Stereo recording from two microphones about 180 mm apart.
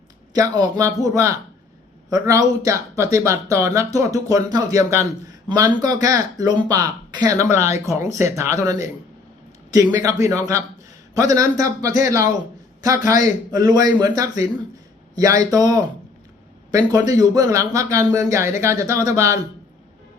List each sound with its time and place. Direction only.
0.3 s a man's voice: 20° right (ahead or behind)